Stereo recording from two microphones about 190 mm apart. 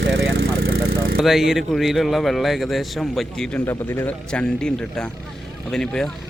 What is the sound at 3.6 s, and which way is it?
Speech, 15° left (ahead or behind).